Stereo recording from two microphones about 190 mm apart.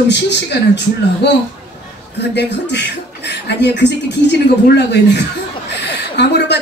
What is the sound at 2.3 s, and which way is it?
A man's voice, 65° left (ahead or behind).